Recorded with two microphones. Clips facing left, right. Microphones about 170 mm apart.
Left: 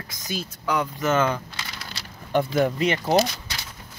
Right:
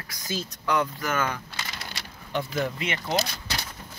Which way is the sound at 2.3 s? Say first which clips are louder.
Left 7 dB; 50° left (ahead or behind).